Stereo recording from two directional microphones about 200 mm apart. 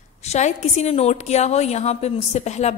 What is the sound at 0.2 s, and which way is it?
A woman's voice, 35° left (ahead or behind).